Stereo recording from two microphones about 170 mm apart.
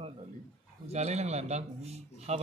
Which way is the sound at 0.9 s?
40° right (ahead or behind).